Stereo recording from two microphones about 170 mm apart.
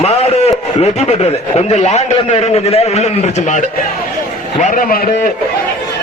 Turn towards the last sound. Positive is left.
turn(degrees=50)  # may be behind; listen again after turning